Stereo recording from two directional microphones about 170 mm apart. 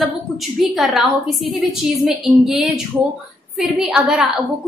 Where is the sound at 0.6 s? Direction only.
Centre (ahead or behind).